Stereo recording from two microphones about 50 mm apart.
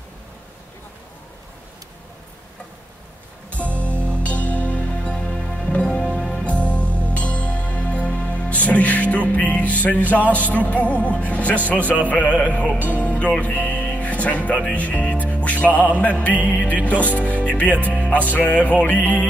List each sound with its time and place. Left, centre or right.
3.8 s music: left; by 6.4 s centre
6.4 s music: left